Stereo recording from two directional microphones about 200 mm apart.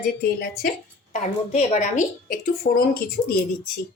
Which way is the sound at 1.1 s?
35° left (ahead or behind).